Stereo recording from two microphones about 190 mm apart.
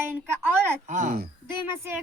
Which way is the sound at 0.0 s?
10° right (ahead or behind).